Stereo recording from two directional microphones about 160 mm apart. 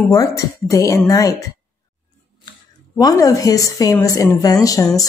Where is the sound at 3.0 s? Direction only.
20° left (ahead or behind).